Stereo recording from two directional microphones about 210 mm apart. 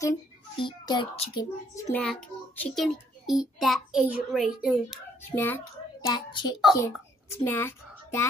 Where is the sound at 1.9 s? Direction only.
5° left (ahead or behind).